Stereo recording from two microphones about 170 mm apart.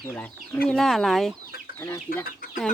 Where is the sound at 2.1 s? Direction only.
60° left (ahead or behind).